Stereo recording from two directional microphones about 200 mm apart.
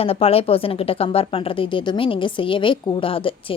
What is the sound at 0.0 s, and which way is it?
A woman's voice, 30° left (ahead or behind).